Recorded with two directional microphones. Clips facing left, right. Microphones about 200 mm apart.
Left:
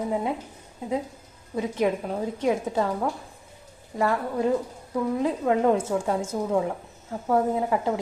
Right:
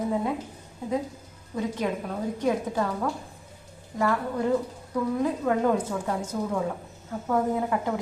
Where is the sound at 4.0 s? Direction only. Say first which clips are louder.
Left 1 dB; 20° left (ahead or behind).